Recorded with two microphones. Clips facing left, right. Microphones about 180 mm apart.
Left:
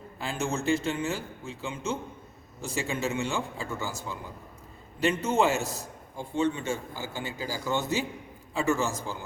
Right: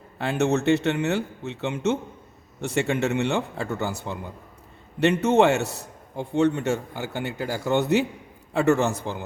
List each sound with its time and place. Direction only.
0.2 s a man's voice: 70° right (ahead or behind)